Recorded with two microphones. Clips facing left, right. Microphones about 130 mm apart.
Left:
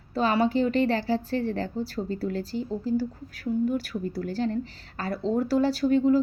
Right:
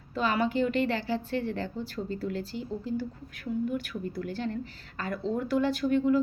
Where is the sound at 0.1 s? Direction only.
35° left (ahead or behind).